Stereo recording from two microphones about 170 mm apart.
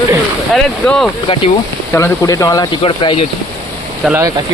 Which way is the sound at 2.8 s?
30° left (ahead or behind).